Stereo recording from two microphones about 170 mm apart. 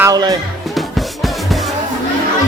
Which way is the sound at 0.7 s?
Centre (ahead or behind).